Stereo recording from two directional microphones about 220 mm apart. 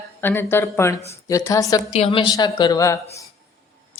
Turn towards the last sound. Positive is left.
turn(degrees=15)  # may be behind; listen again after turning